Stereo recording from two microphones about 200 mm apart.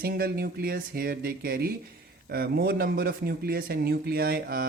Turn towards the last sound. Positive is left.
turn(degrees=-50)  # may be behind; listen again after turning